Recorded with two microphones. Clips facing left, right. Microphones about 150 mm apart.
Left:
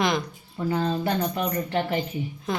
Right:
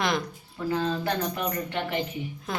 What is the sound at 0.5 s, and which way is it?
Speech, 20° left (ahead or behind).